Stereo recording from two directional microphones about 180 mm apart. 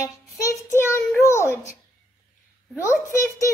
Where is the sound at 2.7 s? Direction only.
15° left (ahead or behind).